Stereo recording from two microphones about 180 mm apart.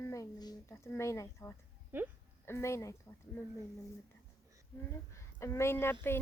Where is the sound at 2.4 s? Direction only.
15° left (ahead or behind).